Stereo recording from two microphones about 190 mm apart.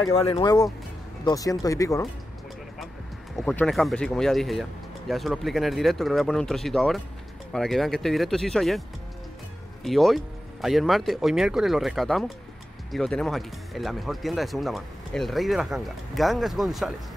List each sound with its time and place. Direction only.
0.1 s speech: 30° left (ahead or behind)
3.3 s speech: 5° left (ahead or behind)
9.8 s speech: centre (ahead or behind)